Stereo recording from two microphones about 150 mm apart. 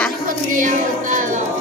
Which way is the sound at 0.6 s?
60° right (ahead or behind).